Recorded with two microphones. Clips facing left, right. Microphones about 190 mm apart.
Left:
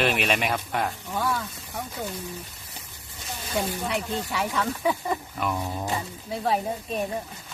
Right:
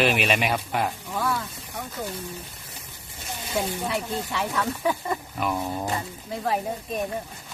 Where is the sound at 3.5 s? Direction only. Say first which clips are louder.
Even; centre (ahead or behind).